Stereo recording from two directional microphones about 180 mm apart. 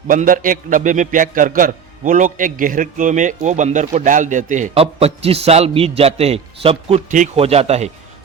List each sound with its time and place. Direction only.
0.1 s a man's voice: 50° right (ahead or behind)